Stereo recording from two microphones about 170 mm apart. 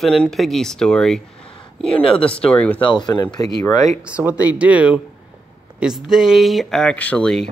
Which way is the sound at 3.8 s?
5° right (ahead or behind).